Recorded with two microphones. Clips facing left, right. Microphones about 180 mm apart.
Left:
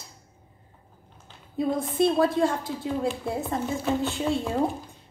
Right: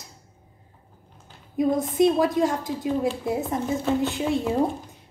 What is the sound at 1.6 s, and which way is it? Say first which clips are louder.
A woman's voice: right 3 dB; 20° right (ahead or behind).